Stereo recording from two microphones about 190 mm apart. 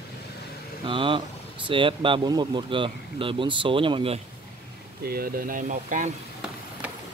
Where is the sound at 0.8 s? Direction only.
25° right (ahead or behind).